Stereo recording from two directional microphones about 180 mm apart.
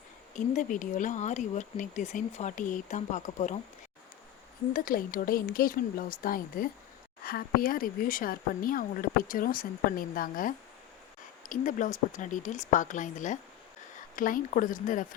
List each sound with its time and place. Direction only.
0.3 s speech: 45° left (ahead or behind)
4.7 s speech: 50° left (ahead or behind)